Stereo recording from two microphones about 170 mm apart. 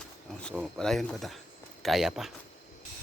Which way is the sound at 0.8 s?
5° left (ahead or behind).